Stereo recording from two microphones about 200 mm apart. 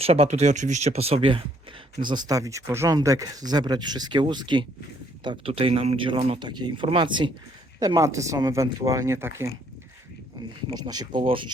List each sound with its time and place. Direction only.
0.0 s speech: 30° right (ahead or behind); by 9.5 s 15° right (ahead or behind)
11.1 s speech: 25° right (ahead or behind)